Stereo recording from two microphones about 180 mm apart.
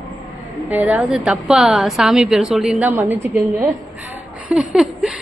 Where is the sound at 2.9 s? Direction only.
15° right (ahead or behind).